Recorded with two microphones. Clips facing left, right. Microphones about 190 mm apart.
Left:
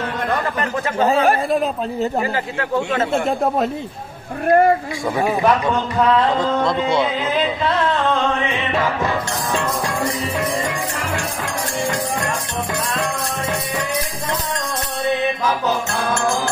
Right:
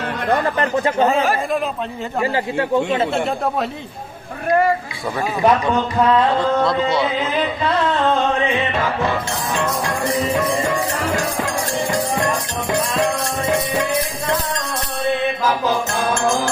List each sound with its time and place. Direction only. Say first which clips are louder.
1.5 s speech: left 2 dB; 35° left (ahead or behind)
3.1 s speech: left 2 dB; 45° left (ahead or behind)